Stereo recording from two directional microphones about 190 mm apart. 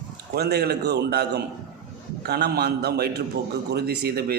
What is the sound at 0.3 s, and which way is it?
A man's voice, 60° right (ahead or behind).